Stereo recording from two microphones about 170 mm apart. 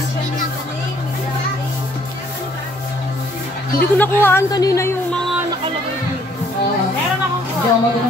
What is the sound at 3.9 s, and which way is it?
A woman's voice, 10° left (ahead or behind).